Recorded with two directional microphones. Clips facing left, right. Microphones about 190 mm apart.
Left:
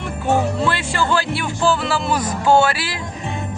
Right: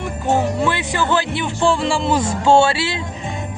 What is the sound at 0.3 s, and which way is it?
Speech, 15° right (ahead or behind).